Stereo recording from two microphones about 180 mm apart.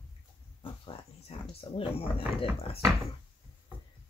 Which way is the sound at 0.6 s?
30° left (ahead or behind).